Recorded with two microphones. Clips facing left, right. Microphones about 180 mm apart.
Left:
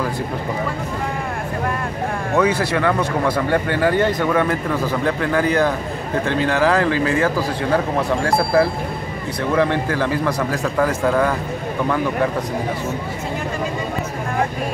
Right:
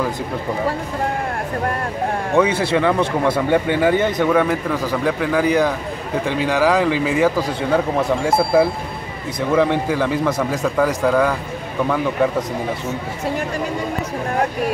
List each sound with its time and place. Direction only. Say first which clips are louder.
2.3 s a man's voice: right 1 dB; 25° right (ahead or behind)
8.3 s a man's voice: right 2 dB; 20° right (ahead or behind)